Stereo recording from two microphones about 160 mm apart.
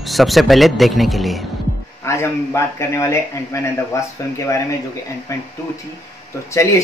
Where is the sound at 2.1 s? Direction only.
15° left (ahead or behind).